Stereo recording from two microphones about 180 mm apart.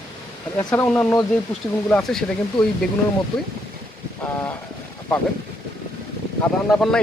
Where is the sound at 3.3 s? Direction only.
25° left (ahead or behind).